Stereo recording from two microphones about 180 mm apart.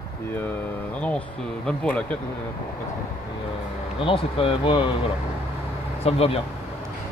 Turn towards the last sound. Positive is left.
turn(degrees=35)  # may be behind; listen again after turning